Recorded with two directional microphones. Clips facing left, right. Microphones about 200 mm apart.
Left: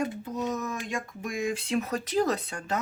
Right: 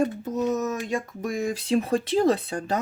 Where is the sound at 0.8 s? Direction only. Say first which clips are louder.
Right 6 dB; 40° right (ahead or behind).